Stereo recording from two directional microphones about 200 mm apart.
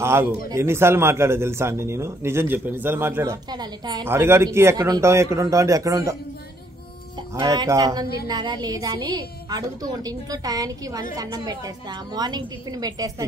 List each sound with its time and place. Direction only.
0.0 s a man's voice: 10° right (ahead or behind)
7.3 s a woman's voice: 20° right (ahead or behind)